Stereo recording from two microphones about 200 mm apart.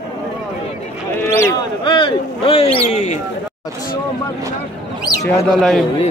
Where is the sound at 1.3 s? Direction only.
15° left (ahead or behind); by 3.2 s 35° left (ahead or behind).